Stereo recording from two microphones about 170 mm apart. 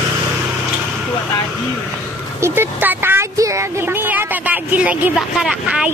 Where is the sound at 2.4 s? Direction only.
15° right (ahead or behind).